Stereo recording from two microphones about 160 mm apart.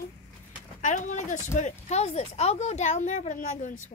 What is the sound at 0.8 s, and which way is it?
Speech, 50° left (ahead or behind).